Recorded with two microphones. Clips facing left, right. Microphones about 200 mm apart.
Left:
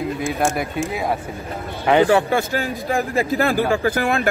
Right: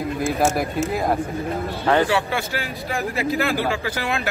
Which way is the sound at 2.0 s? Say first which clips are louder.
Left 6 dB; 45° left (ahead or behind).